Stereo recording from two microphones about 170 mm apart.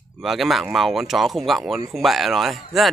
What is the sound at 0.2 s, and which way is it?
Speech, centre (ahead or behind).